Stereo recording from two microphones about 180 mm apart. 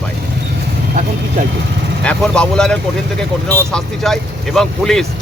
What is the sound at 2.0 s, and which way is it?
Speech, 5° left (ahead or behind).